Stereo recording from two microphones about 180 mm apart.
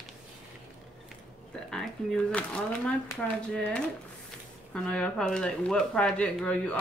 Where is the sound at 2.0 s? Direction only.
5° left (ahead or behind).